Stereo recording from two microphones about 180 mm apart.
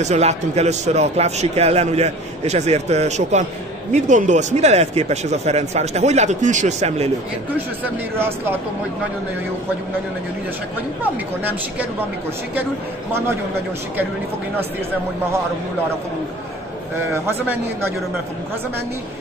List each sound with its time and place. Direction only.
0.0 s a man's voice: 40° right (ahead or behind)
17.1 s speech: 15° right (ahead or behind)